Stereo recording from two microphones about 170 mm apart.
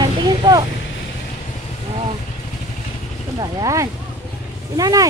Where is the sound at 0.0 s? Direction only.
25° right (ahead or behind).